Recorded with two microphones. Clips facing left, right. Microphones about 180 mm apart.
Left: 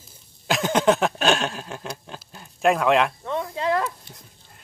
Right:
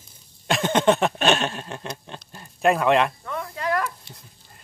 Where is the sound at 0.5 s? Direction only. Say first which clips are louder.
Even; centre (ahead or behind).